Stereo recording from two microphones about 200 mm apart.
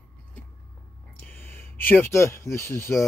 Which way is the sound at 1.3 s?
10° left (ahead or behind).